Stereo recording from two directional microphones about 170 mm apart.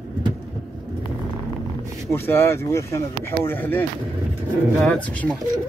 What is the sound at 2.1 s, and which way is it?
Speech, 15° left (ahead or behind).